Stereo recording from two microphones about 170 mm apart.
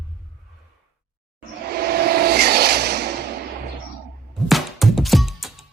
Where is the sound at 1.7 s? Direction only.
65° right (ahead or behind).